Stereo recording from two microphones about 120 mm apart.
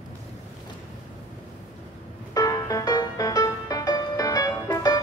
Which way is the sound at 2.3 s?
30° left (ahead or behind).